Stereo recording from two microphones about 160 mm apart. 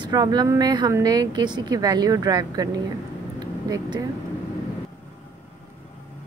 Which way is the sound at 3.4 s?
25° right (ahead or behind).